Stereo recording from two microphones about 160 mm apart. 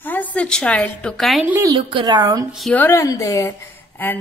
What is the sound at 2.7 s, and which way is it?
A woman's voice, 15° left (ahead or behind).